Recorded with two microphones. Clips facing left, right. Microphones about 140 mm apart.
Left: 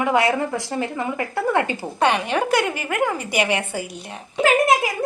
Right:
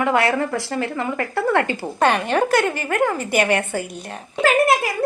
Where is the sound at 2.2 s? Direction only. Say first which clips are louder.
Right 2 dB; 50° right (ahead or behind).